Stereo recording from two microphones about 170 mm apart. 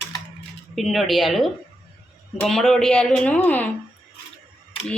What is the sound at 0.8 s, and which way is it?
Speech, centre (ahead or behind).